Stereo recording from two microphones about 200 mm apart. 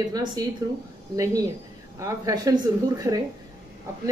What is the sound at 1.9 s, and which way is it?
Speech, 15° right (ahead or behind).